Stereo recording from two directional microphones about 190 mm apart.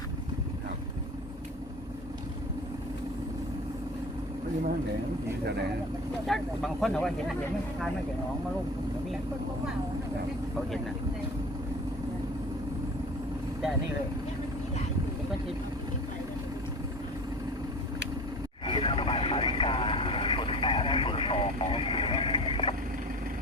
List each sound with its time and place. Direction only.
6.2 s speech: centre (ahead or behind)
18.6 s vehicle: 25° left (ahead or behind)